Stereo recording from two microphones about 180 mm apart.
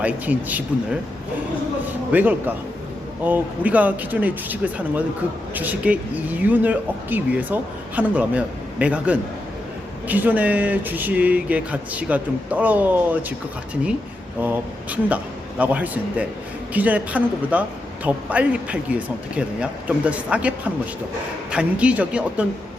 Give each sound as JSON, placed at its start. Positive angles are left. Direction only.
{"t": 0.0, "sound": "a woman's voice", "side_deg": -10}
{"t": 2.1, "sound": "a woman's voice", "side_deg": -10}
{"t": 14.4, "sound": "a woman's voice", "side_deg": -10}
{"t": 21.5, "sound": "a woman's voice", "side_deg": -5}